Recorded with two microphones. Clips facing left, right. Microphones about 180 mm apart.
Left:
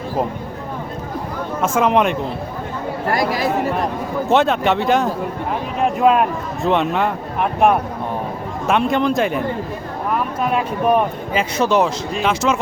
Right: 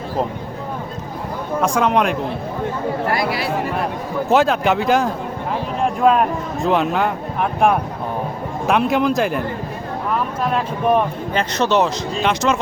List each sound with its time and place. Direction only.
1.6 s speech: centre (ahead or behind)
3.1 s speech: 45° left (ahead or behind)
4.3 s speech: centre (ahead or behind)
8.6 s speech: centre (ahead or behind)
10.4 s speech: 5° left (ahead or behind)